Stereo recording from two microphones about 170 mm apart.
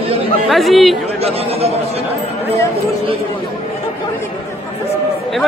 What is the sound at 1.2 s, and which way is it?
Speech, 35° right (ahead or behind).